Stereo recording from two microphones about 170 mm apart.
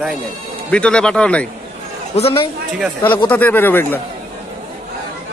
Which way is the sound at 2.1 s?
35° left (ahead or behind).